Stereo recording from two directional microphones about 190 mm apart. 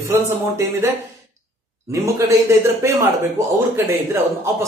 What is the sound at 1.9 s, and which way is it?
Speech, 15° right (ahead or behind).